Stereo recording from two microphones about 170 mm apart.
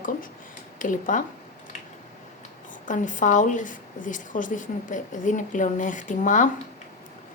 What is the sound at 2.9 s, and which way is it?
A woman's voice, 50° left (ahead or behind).